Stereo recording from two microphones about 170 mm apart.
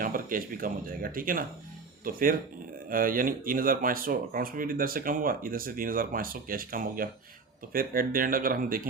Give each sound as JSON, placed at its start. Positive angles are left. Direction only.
{"t": 0.0, "sound": "speech", "side_deg": -55}